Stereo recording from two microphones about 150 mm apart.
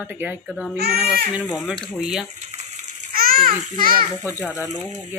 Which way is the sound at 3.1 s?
75° right (ahead or behind).